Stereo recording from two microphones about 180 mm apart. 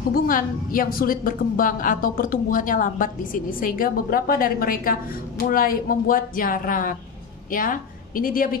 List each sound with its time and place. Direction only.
0.1 s a woman's voice: 50° left (ahead or behind)